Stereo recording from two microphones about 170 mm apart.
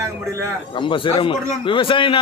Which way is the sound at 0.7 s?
30° left (ahead or behind).